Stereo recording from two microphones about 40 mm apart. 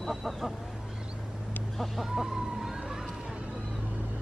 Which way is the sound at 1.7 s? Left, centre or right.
Centre.